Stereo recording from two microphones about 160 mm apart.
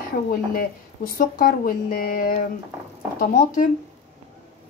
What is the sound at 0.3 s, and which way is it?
Speech, 65° left (ahead or behind).